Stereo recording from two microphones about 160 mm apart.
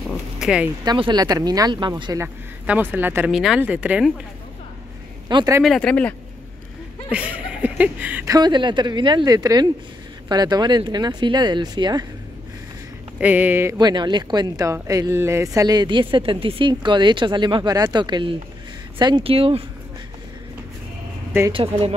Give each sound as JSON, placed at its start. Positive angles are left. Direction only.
{"t": 0.1, "sound": "a sound", "side_deg": -5}
{"t": 0.8, "sound": "speech", "side_deg": -30}
{"t": 2.2, "sound": "speech", "side_deg": -10}
{"t": 5.3, "sound": "speech", "side_deg": -25}
{"t": 5.6, "sound": "speech", "side_deg": 5}
{"t": 7.1, "sound": "speech", "side_deg": -10}
{"t": 8.3, "sound": "speech", "side_deg": -25}
{"t": 13.2, "sound": "speech", "side_deg": -10}
{"t": 13.7, "sound": "speech", "side_deg": -25}
{"t": 21.5, "sound": "speech", "side_deg": -35}